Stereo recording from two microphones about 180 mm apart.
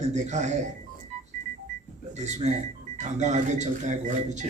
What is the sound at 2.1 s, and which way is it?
A man's voice, 40° right (ahead or behind).